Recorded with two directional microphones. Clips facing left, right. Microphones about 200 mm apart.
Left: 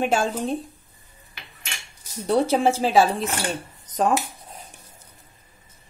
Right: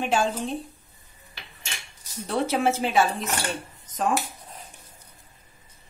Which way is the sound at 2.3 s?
35° left (ahead or behind).